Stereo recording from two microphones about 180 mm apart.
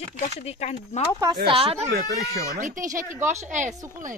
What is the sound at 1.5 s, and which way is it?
Speech, 30° right (ahead or behind).